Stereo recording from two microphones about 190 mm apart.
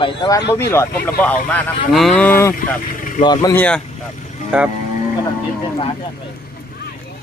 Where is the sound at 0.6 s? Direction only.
15° left (ahead or behind).